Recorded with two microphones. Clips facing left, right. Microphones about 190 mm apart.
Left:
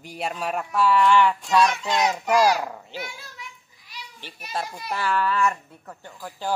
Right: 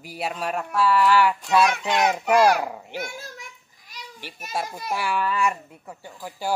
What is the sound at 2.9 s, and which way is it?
Children playing, 45° right (ahead or behind).